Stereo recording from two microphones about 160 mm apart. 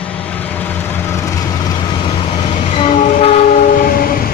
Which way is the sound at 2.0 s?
35° left (ahead or behind).